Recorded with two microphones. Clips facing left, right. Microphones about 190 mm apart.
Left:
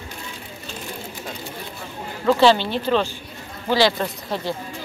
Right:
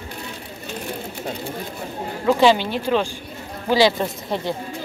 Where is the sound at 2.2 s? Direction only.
10° right (ahead or behind).